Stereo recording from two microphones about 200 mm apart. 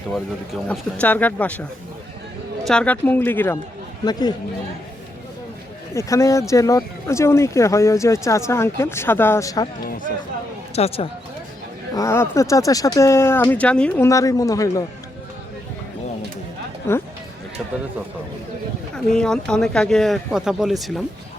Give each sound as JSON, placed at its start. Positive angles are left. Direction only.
{"t": 0.7, "sound": "speech", "side_deg": 5}
{"t": 2.6, "sound": "speech", "side_deg": 5}
{"t": 4.0, "sound": "speech", "side_deg": 20}
{"t": 5.9, "sound": "speech", "side_deg": 15}
{"t": 10.8, "sound": "speech", "side_deg": 30}
{"t": 11.9, "sound": "speech", "side_deg": 15}
{"t": 16.9, "sound": "speech", "side_deg": 10}
{"t": 18.9, "sound": "speech", "side_deg": 5}